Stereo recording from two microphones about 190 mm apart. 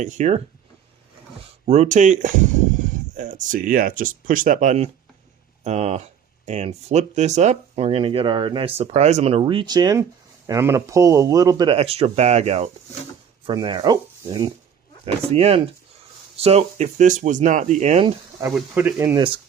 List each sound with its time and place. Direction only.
0.0 s speech: 40° right (ahead or behind)
1.6 s speech: 35° right (ahead or behind)
13.5 s speech: 20° right (ahead or behind)
15.0 s speech: 30° right (ahead or behind)
18.0 s speech: 20° right (ahead or behind)
18.5 s speech: 5° right (ahead or behind)